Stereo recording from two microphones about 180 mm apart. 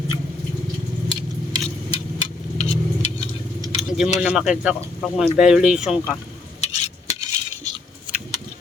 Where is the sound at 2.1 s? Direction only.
35° left (ahead or behind).